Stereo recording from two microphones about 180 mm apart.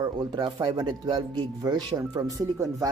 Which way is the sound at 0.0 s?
25° right (ahead or behind).